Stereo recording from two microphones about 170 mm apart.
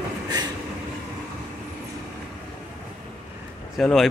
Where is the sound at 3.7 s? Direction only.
Centre (ahead or behind).